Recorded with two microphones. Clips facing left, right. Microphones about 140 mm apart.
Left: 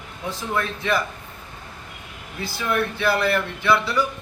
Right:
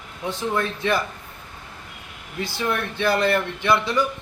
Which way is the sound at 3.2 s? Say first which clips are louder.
Right 1 dB; 20° right (ahead or behind).